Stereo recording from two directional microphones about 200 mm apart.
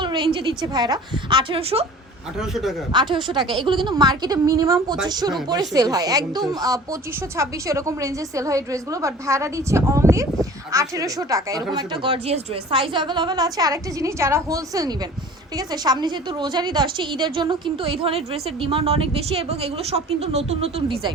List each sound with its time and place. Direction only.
0.0 s a sound: 25° right (ahead or behind)
0.3 s a woman's voice: 20° right (ahead or behind)
2.4 s a man's voice: centre (ahead or behind)
2.9 s a woman's voice: 25° right (ahead or behind)